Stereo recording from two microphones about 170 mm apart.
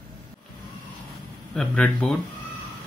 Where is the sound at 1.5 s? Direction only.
5° left (ahead or behind).